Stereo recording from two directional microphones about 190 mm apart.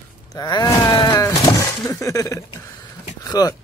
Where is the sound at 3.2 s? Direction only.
20° left (ahead or behind).